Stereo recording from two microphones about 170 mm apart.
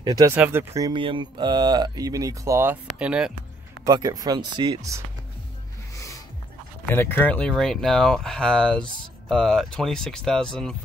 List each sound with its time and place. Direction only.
0.0 s speech: 20° right (ahead or behind)
3.8 s speech: 20° right (ahead or behind)
5.9 s music: 20° left (ahead or behind)
6.9 s speech: 10° left (ahead or behind)